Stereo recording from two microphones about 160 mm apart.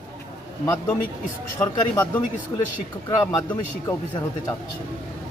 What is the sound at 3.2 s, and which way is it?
Speech, 20° left (ahead or behind).